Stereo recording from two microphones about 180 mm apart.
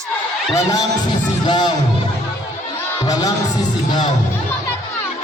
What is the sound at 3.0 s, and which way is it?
Music, 20° left (ahead or behind).